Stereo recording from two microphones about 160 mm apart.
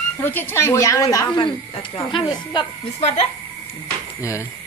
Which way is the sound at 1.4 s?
35° left (ahead or behind).